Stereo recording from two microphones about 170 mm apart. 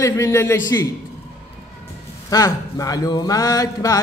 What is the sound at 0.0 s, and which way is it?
Speech, 15° left (ahead or behind).